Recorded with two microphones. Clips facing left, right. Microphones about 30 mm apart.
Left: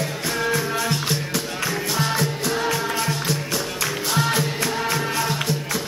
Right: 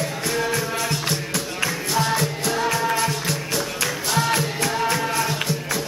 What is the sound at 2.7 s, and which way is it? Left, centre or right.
Music, centre.